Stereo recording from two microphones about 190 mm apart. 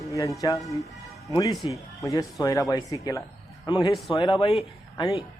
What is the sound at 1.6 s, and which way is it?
Speech, 15° left (ahead or behind).